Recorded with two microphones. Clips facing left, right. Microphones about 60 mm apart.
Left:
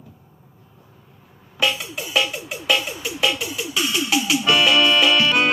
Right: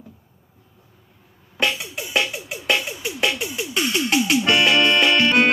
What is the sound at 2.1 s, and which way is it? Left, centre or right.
Music, right.